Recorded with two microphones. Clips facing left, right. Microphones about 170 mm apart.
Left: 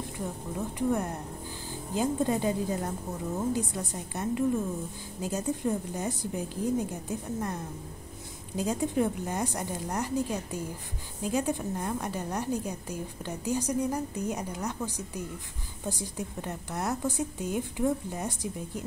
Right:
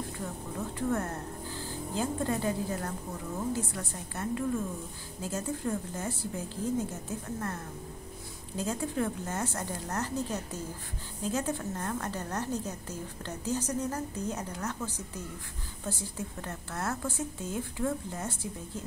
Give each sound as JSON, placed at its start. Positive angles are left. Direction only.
{"t": 0.7, "sound": "a woman's voice", "side_deg": 15}